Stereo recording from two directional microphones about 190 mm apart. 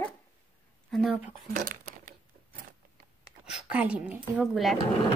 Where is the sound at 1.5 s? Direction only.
45° right (ahead or behind).